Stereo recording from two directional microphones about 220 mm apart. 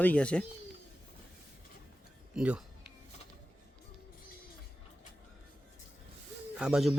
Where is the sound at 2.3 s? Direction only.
5° right (ahead or behind).